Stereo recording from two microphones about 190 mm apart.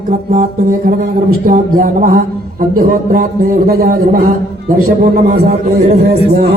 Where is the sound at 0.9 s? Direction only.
50° right (ahead or behind).